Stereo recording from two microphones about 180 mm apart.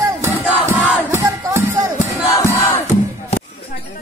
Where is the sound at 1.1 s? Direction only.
15° right (ahead or behind).